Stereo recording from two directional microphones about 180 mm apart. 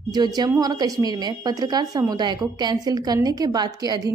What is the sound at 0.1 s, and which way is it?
A woman's voice, 20° right (ahead or behind).